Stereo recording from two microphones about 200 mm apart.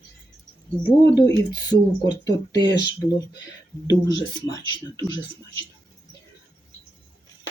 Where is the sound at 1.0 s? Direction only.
20° left (ahead or behind).